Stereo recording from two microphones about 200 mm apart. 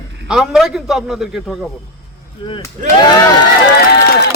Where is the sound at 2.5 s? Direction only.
25° left (ahead or behind).